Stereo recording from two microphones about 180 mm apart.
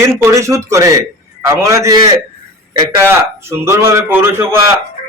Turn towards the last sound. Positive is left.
turn(degrees=-15)  # may be behind; listen again after turning